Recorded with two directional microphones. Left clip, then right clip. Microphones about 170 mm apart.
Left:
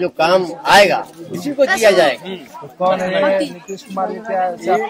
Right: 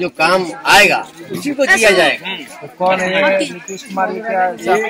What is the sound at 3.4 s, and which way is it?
Speech, 15° left (ahead or behind).